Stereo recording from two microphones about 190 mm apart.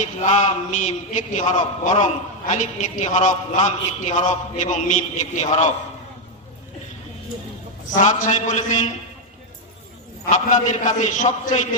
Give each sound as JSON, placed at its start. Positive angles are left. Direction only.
{"t": 0.0, "sound": "a man's voice", "side_deg": 40}
{"t": 7.9, "sound": "a man's voice", "side_deg": 40}
{"t": 10.2, "sound": "a man's voice", "side_deg": 40}